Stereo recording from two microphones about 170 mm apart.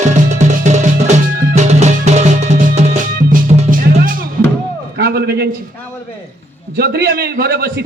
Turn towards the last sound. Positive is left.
turn(degrees=-65)  # may be behind; listen again after turning